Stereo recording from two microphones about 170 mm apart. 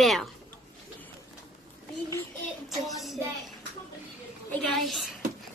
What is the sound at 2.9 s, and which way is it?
Speech, centre (ahead or behind).